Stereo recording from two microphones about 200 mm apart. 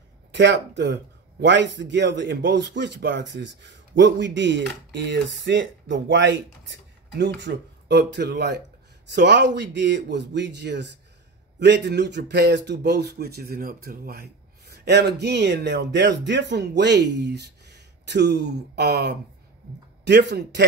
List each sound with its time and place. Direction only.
0.3 s a man's voice: 60° right (ahead or behind)